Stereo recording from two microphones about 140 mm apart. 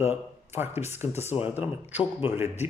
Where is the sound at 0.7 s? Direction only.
50° left (ahead or behind).